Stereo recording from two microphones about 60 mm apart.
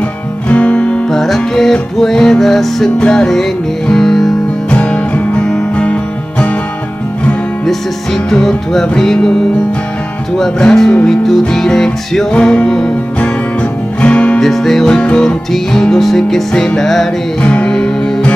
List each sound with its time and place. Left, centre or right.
0.5 s music: centre
1.1 s music: centre
4.6 s music: left
5.4 s music: centre
7.6 s music: centre
10.3 s music: centre
14.4 s music: centre
17.4 s music: centre